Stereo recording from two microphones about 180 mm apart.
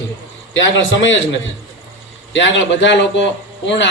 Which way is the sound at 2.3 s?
85° left.